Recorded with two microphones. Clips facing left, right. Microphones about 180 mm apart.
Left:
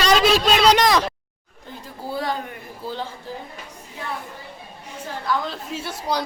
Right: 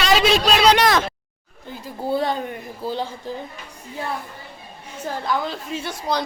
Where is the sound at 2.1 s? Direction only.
25° right (ahead or behind).